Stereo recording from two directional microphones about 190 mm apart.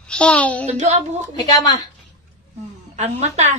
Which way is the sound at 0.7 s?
35° right (ahead or behind).